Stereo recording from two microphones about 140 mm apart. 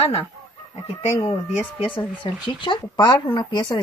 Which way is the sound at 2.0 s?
35° left (ahead or behind).